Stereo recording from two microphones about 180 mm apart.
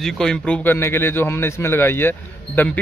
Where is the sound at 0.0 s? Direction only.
5° left (ahead or behind).